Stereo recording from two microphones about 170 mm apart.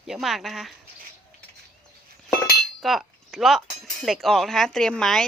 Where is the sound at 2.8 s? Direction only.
Centre (ahead or behind).